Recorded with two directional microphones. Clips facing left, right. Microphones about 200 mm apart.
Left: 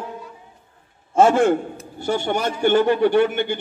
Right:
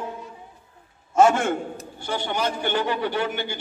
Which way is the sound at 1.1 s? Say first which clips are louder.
Left 3 dB; 30° left (ahead or behind).